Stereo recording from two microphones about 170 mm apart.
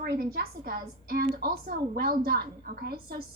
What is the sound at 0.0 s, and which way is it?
A woman's voice, 70° right (ahead or behind).